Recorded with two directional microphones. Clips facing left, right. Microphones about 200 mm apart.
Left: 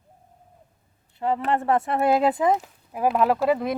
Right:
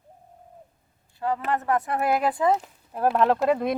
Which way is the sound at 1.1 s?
25° left (ahead or behind).